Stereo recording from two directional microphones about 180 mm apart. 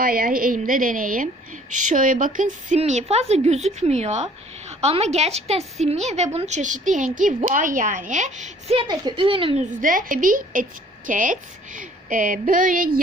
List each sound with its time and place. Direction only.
0.0 s a woman's voice: 55° right (ahead or behind); by 9.6 s 30° right (ahead or behind)
9.8 s a woman's voice: 50° right (ahead or behind)